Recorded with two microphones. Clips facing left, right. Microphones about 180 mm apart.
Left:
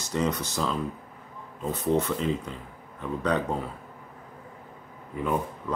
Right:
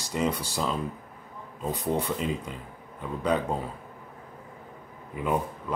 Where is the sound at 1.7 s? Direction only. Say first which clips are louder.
Left 3 dB; 15° right (ahead or behind).